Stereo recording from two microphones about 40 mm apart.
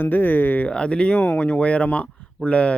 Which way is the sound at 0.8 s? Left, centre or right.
Left.